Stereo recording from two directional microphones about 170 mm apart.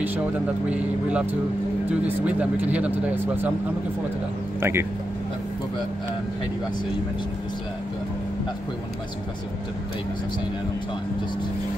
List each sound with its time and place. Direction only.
0.7 s speech: 5° right (ahead or behind)
4.6 s speech: 15° right (ahead or behind)